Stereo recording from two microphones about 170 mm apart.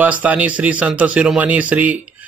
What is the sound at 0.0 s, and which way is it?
Speech, 10° right (ahead or behind).